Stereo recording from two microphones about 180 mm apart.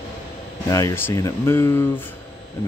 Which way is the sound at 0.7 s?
15° left (ahead or behind).